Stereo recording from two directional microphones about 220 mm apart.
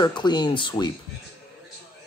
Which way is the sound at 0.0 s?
20° left (ahead or behind).